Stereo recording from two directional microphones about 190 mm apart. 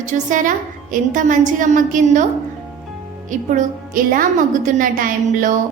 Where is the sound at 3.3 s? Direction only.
45° right (ahead or behind).